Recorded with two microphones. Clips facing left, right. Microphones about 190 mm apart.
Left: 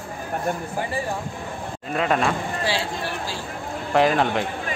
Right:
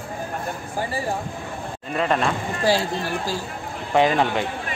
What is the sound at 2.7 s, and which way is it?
Speech, 45° right (ahead or behind).